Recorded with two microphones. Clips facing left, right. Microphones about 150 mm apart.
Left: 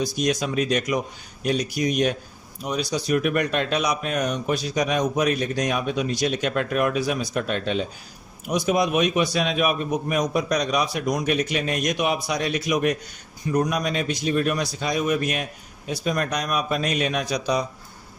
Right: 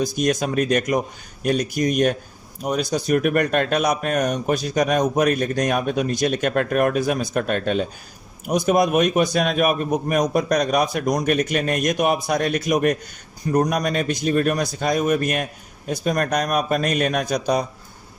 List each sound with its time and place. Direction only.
0.0 s speech: 50° right (ahead or behind)